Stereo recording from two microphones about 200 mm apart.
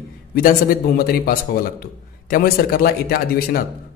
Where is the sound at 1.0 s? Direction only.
50° left (ahead or behind).